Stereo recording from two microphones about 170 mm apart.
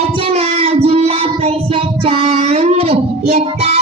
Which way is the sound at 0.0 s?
35° right (ahead or behind).